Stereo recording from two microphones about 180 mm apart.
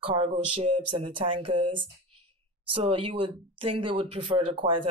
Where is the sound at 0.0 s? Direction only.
30° right (ahead or behind).